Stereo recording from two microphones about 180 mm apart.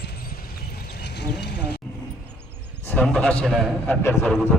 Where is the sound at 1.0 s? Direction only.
70° left (ahead or behind).